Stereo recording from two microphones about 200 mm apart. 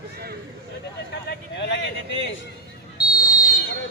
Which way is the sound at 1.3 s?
60° left (ahead or behind).